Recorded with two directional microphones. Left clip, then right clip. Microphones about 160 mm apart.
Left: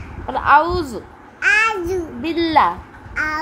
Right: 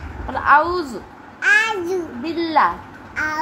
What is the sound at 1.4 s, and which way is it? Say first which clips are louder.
Babbling: left 1 dB; 25° left (ahead or behind).